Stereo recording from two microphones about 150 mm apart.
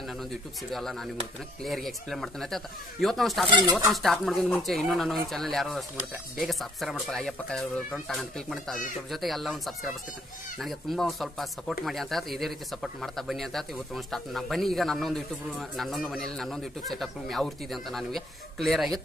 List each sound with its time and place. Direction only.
0.3 s speech: centre (ahead or behind)
3.4 s speech: 35° right (ahead or behind)
3.9 s speech: centre (ahead or behind)